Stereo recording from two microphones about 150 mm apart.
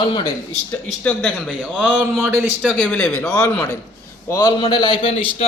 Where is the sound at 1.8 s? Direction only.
10° right (ahead or behind).